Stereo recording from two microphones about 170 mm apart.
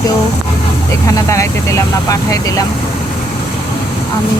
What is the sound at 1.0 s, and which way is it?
Speech, 20° left (ahead or behind).